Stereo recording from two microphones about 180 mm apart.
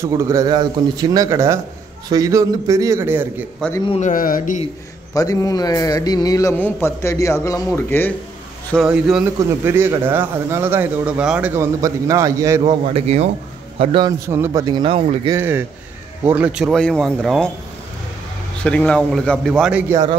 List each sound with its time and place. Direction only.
0.0 s a man's voice: 15° right (ahead or behind)
4.0 s speech: 50° left (ahead or behind)
5.1 s a man's voice: 20° left (ahead or behind)
8.7 s a man's voice: 5° right (ahead or behind)
12.9 s a man's voice: 35° right (ahead or behind)
14.2 s a man's voice: 15° right (ahead or behind)
15.3 s a man's voice: 10° right (ahead or behind)
18.6 s speech: 5° left (ahead or behind)
19.9 s a man's voice: 20° right (ahead or behind)